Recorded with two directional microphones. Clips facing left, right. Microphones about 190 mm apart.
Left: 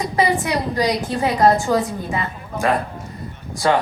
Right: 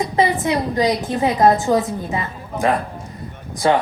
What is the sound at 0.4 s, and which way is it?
A woman's voice, 20° right (ahead or behind).